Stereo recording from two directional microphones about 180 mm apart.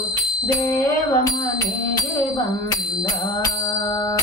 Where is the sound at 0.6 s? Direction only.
15° left (ahead or behind).